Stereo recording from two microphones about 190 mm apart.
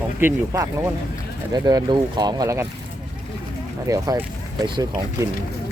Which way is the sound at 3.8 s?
15° right (ahead or behind).